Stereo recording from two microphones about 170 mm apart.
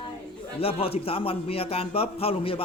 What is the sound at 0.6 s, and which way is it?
A man's voice, 35° left (ahead or behind).